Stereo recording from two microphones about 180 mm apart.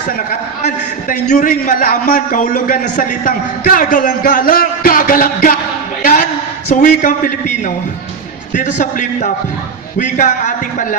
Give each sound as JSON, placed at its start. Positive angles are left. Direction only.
{"t": 0.3, "sound": "a man's voice", "side_deg": 45}